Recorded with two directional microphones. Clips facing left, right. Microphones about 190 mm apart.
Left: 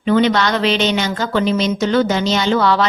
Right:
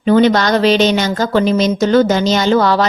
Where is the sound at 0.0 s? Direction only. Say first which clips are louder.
Right 4 dB; 40° right (ahead or behind).